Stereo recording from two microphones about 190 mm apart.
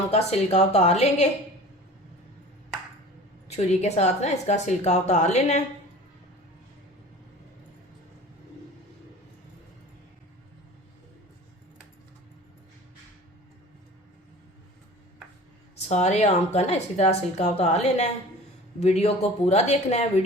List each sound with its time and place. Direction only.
0.1 s a woman's voice: 35° left (ahead or behind)
3.5 s a woman's voice: 35° left (ahead or behind)
15.9 s a woman's voice: 35° left (ahead or behind)